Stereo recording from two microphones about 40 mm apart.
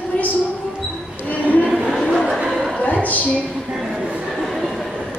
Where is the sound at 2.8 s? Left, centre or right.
Left.